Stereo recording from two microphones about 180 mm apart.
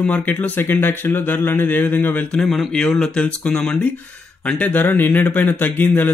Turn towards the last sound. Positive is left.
turn(degrees=10)  # may be behind; listen again after turning